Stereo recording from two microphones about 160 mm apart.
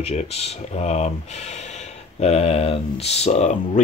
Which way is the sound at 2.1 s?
40° left (ahead or behind).